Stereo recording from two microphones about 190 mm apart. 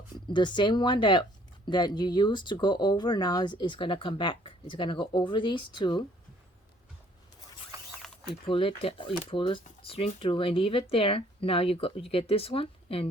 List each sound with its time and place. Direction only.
0.3 s speech: 25° left (ahead or behind)
8.4 s speech: 25° left (ahead or behind)